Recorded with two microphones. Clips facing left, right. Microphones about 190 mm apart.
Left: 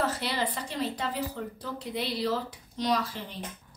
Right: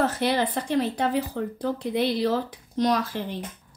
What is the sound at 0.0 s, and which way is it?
A woman's voice, 50° right (ahead or behind).